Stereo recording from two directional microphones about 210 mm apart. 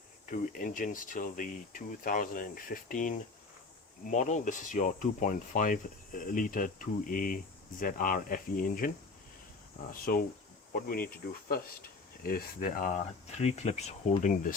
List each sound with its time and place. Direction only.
0.3 s speech: 40° left (ahead or behind)
10.1 s speech: 45° left (ahead or behind)